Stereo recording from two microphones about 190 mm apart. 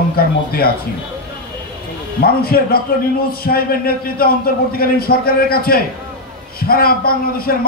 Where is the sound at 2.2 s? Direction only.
55° left (ahead or behind).